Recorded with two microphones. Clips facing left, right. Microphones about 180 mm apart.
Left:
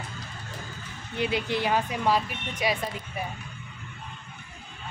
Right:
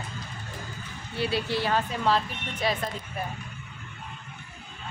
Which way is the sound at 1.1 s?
20° left (ahead or behind).